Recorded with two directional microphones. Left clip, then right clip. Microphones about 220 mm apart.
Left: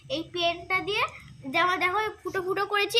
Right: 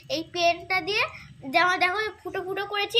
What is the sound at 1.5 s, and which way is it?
Speech, 15° left (ahead or behind).